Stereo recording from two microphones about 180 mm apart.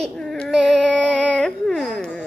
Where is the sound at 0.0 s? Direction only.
5° left (ahead or behind).